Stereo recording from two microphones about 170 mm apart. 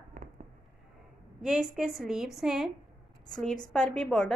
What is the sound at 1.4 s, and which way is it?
A woman's voice, 5° right (ahead or behind).